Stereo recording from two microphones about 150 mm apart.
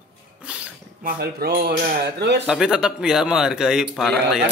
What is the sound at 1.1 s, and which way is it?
Speech, 90° right.